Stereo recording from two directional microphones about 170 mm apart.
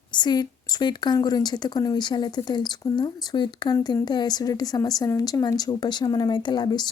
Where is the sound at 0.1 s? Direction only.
25° left (ahead or behind).